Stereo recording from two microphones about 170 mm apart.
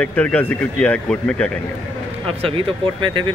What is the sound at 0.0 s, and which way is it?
Speech, 10° left (ahead or behind).